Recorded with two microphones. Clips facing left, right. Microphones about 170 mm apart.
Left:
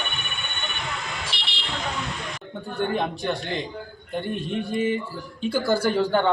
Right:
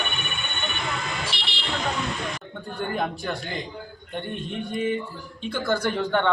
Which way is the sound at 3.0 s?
Centre (ahead or behind).